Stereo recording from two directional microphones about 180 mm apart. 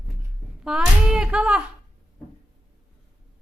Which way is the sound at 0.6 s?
5° right (ahead or behind).